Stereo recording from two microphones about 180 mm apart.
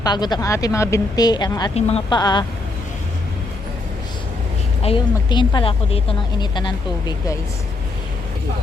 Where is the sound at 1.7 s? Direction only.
35° left (ahead or behind).